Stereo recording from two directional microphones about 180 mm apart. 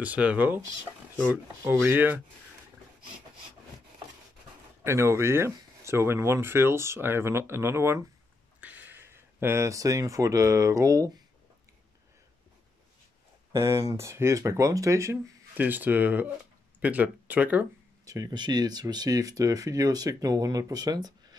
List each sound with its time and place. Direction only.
0.0 s speech: 10° right (ahead or behind)
4.8 s speech: 15° right (ahead or behind)
13.5 s speech: 15° right (ahead or behind)
18.0 s speech: 20° right (ahead or behind)